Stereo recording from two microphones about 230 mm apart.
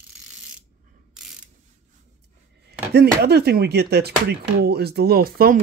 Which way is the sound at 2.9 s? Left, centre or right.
Right.